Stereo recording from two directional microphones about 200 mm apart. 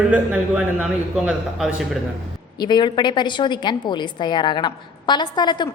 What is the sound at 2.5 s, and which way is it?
A woman's voice, 20° left (ahead or behind).